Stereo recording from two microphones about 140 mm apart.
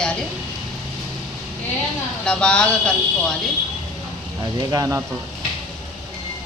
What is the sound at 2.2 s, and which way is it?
Speech, 5° left (ahead or behind).